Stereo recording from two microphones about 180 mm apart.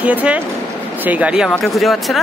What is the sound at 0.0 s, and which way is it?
Speech, 10° right (ahead or behind).